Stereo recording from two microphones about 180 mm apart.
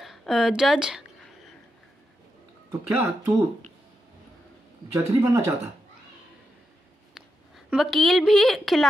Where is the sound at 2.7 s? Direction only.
15° right (ahead or behind).